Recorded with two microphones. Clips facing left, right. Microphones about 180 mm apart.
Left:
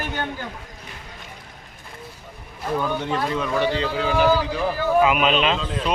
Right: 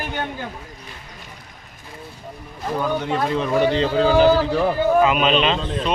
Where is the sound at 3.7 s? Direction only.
30° right (ahead or behind).